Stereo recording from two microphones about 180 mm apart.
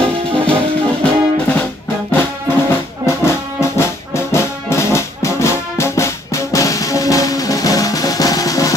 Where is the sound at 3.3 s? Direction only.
15° left (ahead or behind).